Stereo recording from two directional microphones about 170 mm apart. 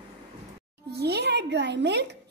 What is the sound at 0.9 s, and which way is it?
A child's voice, 70° right (ahead or behind).